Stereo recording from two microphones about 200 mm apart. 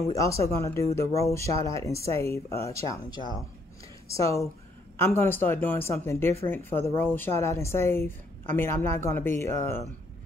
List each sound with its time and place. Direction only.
0.1 s a woman's voice: 15° left (ahead or behind)